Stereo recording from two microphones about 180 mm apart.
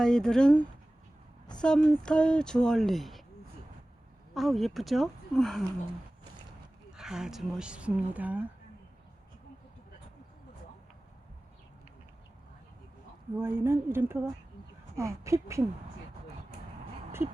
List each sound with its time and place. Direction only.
0.0 s speech: 5° left (ahead or behind)
4.4 s speech: centre (ahead or behind)
6.9 s speech: 5° right (ahead or behind)
13.3 s speech: 10° right (ahead or behind)